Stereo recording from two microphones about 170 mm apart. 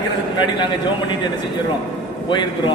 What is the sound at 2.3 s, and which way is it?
Speech, 25° left (ahead or behind).